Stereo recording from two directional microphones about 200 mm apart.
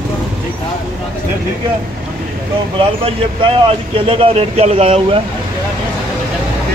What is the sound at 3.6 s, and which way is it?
Speech, 25° right (ahead or behind).